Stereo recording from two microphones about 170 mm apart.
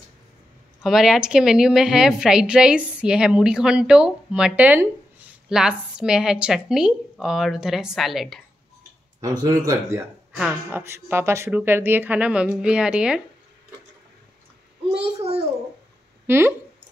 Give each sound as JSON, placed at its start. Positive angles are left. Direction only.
{"t": 0.8, "sound": "a woman's voice", "side_deg": 0}
{"t": 9.2, "sound": "speech", "side_deg": -20}
{"t": 14.9, "sound": "a child's voice", "side_deg": -35}
{"t": 16.3, "sound": "speech", "side_deg": -15}